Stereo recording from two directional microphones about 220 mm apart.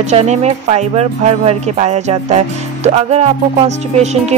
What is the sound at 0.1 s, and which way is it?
Speech, 30° right (ahead or behind).